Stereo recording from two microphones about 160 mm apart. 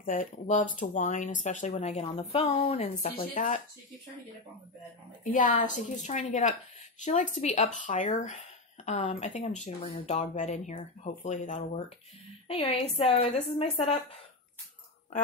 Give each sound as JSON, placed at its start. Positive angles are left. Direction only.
{"t": 0.0, "sound": "speech", "side_deg": 55}
{"t": 1.7, "sound": "a woman's voice", "side_deg": 40}
{"t": 3.2, "sound": "speech", "side_deg": 55}
{"t": 5.2, "sound": "a woman's voice", "side_deg": 55}